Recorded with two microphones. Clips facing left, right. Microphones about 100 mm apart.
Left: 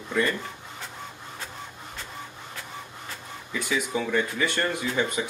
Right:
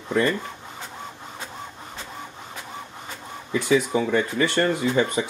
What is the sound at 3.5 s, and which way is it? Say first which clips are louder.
Speech: right 8 dB; 25° right (ahead or behind).